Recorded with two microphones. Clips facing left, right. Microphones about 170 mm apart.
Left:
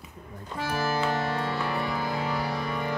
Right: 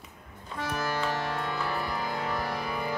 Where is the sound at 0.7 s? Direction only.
10° left (ahead or behind).